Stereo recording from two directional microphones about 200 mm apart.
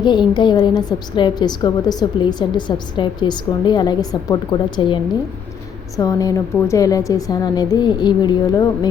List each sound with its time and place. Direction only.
0.0 s a woman's voice: 20° left (ahead or behind)
6.0 s a woman's voice: 15° left (ahead or behind)